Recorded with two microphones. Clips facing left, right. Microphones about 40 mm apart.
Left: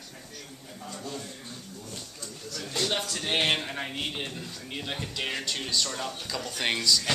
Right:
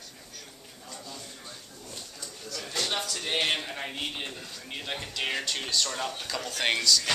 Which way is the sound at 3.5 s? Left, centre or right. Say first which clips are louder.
Left 2 dB; centre.